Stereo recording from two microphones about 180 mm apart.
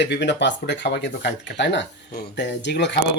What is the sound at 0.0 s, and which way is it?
Speech, 75° left (ahead or behind).